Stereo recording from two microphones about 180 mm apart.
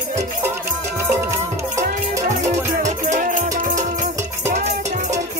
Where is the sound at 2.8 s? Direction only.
45° right (ahead or behind).